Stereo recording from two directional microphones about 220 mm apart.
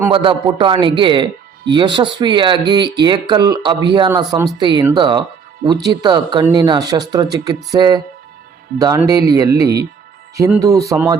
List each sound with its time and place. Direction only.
0.1 s speech: 20° right (ahead or behind)